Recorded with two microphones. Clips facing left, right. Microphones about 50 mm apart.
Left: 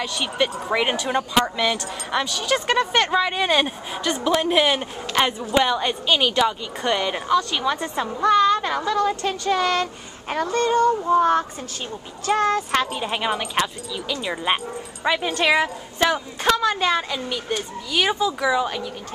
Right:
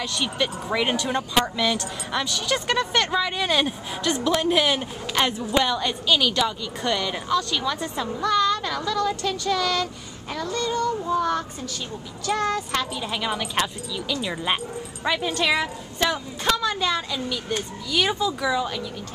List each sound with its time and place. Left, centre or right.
0.0 s a woman's voice: centre; by 9.8 s left
10.3 s child singing: left
12.3 s a woman's voice: left; by 18.8 s centre